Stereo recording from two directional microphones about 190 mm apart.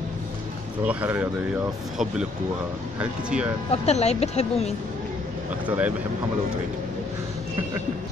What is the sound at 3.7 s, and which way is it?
Speech, 35° left (ahead or behind).